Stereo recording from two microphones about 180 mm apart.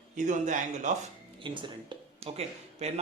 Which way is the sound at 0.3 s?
45° right (ahead or behind).